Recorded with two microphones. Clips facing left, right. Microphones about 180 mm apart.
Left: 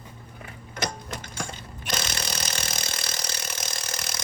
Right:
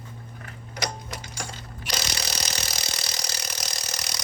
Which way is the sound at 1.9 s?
50° left (ahead or behind).